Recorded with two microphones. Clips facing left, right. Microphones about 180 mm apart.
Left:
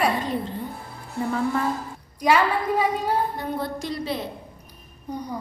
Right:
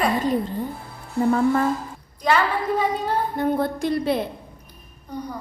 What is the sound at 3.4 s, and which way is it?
Speech, 55° right (ahead or behind).